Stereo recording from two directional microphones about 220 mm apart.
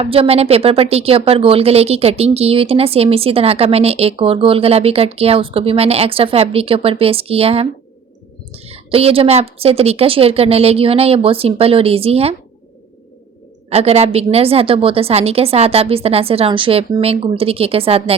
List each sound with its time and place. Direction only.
0.0 s a woman's voice: 25° right (ahead or behind)
13.7 s a woman's voice: 30° right (ahead or behind)